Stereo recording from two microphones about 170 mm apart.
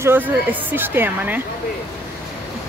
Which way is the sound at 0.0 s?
10° right (ahead or behind).